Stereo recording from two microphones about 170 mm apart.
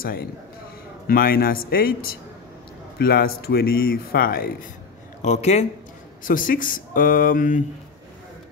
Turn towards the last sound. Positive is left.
turn(degrees=50)  # may be behind; listen again after turning